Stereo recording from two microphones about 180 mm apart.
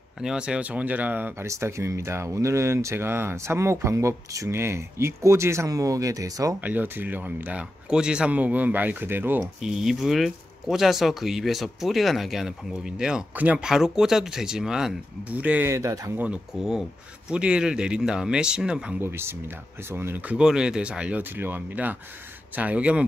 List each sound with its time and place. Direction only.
0.2 s speech: 5° right (ahead or behind)
16.2 s speech: 5° right (ahead or behind)